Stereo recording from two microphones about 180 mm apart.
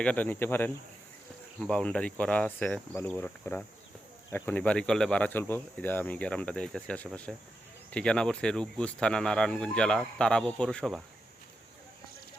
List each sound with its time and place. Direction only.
0.0 s speech: 5° left (ahead or behind)